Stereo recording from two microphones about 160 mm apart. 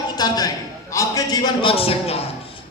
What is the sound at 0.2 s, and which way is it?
A man's voice, 25° left (ahead or behind).